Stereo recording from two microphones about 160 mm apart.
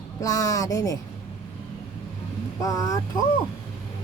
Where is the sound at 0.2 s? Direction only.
20° left (ahead or behind).